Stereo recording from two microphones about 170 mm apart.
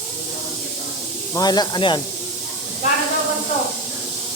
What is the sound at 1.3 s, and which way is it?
Speech, 25° left (ahead or behind).